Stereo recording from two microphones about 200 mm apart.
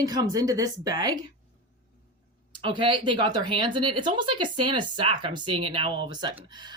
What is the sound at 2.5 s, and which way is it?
Speech, 25° right (ahead or behind).